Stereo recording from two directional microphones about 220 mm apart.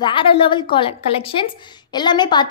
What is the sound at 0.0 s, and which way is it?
A woman's voice, 20° left (ahead or behind).